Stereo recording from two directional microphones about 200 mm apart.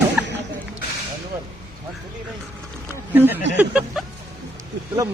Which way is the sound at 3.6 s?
5° right (ahead or behind).